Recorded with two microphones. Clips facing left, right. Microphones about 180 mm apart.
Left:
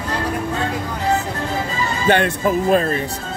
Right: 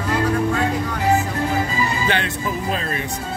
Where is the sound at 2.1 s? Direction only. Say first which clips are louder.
Left 7 dB; 50° left (ahead or behind).